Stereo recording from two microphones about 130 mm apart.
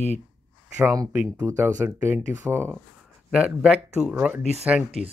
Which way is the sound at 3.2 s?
5° right (ahead or behind).